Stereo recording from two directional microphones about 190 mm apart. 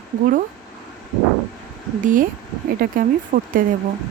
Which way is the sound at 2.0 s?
45° right (ahead or behind).